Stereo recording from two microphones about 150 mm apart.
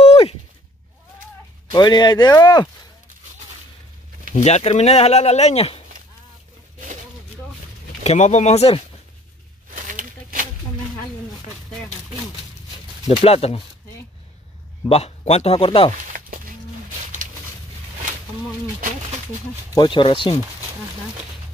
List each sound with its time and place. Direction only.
0.0 s a sound: 40° left (ahead or behind)
1.7 s speech: 30° left (ahead or behind)
4.3 s speech: 50° left (ahead or behind)
8.0 s speech: 50° left (ahead or behind)
9.7 s a sound: 60° right (ahead or behind)
13.0 s speech: 40° left (ahead or behind)
14.9 s speech: 45° left (ahead or behind)
16.1 s a sound: 65° right (ahead or behind)
19.7 s speech: 30° left (ahead or behind)